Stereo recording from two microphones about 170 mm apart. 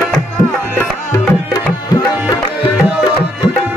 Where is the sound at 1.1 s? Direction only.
20° left (ahead or behind).